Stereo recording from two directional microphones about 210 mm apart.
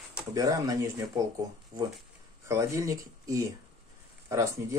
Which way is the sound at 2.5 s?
15° right (ahead or behind).